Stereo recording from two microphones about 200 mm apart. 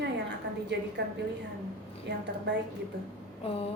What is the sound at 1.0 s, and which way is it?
Mantra, 60° right (ahead or behind).